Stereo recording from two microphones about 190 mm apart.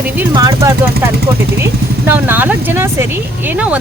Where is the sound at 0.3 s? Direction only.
15° right (ahead or behind).